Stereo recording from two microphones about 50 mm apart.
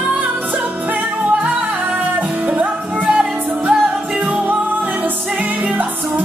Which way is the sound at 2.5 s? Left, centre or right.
Right.